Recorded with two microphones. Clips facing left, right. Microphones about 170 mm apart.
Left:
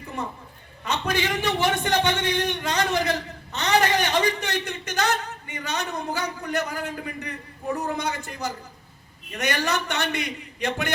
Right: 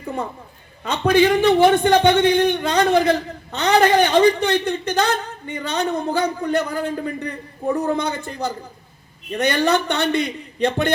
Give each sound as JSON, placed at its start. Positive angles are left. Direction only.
{"t": 0.9, "sound": "a man's voice", "side_deg": -30}